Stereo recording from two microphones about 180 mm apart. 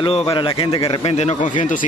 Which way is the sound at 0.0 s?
30° left (ahead or behind).